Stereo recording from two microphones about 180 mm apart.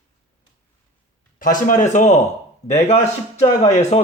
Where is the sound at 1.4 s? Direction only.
45° left (ahead or behind).